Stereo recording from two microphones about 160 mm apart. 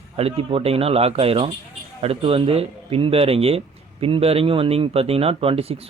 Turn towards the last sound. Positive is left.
turn(degrees=-40)  # may be behind; listen again after turning